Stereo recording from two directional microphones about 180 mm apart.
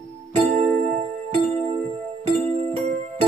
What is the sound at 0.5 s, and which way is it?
Music, 40° right (ahead or behind).